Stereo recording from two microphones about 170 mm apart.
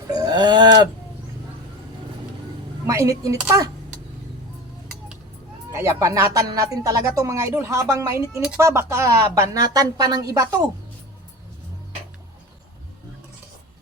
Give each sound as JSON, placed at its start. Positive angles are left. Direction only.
{"t": 0.1, "sound": "speech", "side_deg": -20}
{"t": 2.8, "sound": "a woman's voice", "side_deg": -20}
{"t": 5.7, "sound": "a woman's voice", "side_deg": -15}